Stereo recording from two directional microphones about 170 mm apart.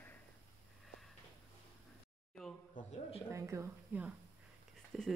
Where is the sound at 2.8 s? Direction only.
50° left (ahead or behind).